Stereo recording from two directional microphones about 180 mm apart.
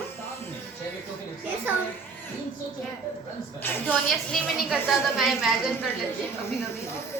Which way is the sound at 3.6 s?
10° left (ahead or behind).